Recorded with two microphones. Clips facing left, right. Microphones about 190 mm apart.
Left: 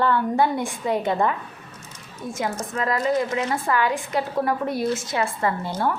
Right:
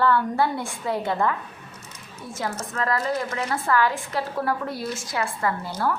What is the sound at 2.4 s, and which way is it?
A woman's voice, 15° left (ahead or behind).